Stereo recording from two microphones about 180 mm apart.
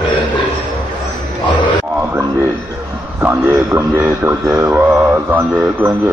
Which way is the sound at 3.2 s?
10° right (ahead or behind).